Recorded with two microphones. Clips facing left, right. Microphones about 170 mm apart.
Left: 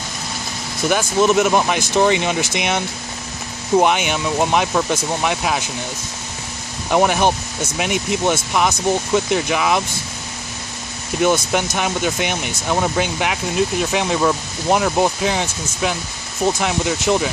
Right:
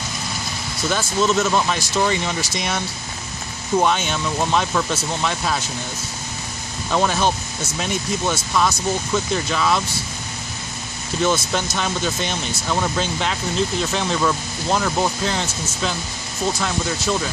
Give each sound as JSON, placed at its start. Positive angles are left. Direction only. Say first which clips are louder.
{"t": 0.8, "sound": "speech", "louder": "left 4 dB", "side_deg": 15}
{"t": 6.9, "sound": "speech", "louder": "left 4 dB", "side_deg": 15}
{"t": 11.2, "sound": "speech", "louder": "left 4 dB", "side_deg": 15}